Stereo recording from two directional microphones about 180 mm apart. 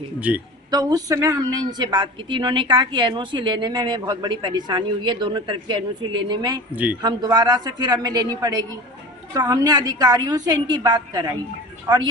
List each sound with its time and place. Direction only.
0.2 s a man's voice: 5° right (ahead or behind)
0.7 s speech: 20° right (ahead or behind)